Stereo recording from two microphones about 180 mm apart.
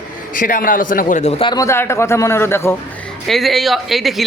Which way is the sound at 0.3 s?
50° left (ahead or behind).